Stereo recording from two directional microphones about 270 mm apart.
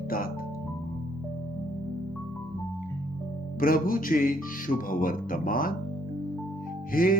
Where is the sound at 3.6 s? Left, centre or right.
Left.